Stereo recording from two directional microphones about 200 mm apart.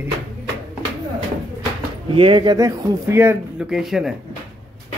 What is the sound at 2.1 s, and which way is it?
Speech, 25° right (ahead or behind).